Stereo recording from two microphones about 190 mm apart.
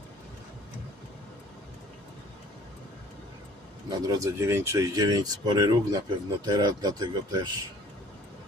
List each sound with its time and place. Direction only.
4.0 s speech: 15° right (ahead or behind)